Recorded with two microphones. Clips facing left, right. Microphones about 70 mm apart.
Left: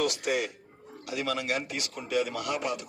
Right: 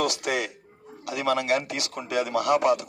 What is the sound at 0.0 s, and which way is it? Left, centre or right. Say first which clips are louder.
A man's voice: right 2 dB; right.